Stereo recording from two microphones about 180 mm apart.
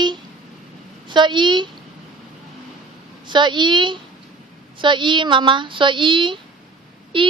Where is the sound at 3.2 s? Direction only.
25° right (ahead or behind).